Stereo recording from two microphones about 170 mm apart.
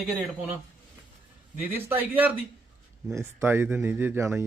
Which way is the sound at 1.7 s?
10° right (ahead or behind).